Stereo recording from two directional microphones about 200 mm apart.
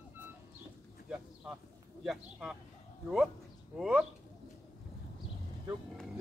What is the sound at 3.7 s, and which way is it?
Bird, 5° right (ahead or behind).